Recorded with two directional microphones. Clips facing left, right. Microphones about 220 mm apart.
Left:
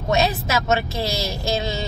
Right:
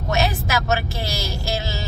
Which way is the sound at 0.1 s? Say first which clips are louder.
Left 2 dB; 20° left (ahead or behind).